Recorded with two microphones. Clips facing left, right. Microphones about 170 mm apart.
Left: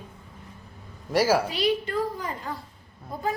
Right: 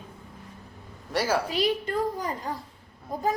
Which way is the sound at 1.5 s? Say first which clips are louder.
Left 1 dB; 45° right (ahead or behind).